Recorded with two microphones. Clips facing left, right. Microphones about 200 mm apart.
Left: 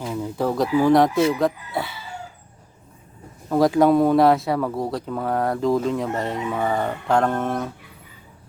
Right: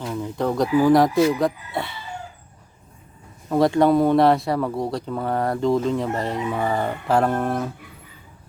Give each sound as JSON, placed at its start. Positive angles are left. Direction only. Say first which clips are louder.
{"t": 0.0, "sound": "speech", "louder": "even", "side_deg": 5}
{"t": 3.5, "sound": "speech", "louder": "left 1 dB", "side_deg": 0}